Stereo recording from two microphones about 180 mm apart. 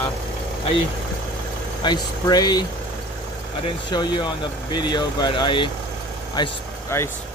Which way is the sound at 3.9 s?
25° left (ahead or behind).